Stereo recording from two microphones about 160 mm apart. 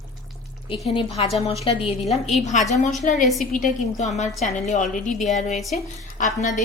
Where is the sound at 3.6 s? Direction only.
45° left (ahead or behind).